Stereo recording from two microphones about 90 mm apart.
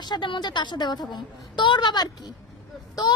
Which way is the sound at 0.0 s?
55° left (ahead or behind).